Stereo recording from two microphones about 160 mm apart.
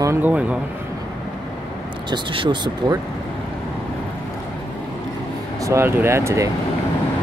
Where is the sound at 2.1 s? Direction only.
30° right (ahead or behind).